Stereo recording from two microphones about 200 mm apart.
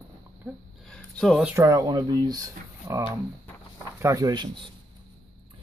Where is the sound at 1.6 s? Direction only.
15° right (ahead or behind).